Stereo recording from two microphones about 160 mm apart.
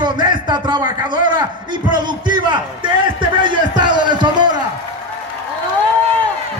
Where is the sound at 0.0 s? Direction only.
30° right (ahead or behind).